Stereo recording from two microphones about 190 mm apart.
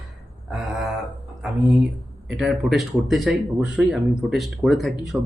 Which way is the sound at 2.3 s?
Centre (ahead or behind).